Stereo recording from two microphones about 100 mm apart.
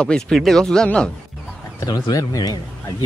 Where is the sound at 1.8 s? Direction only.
40° left (ahead or behind).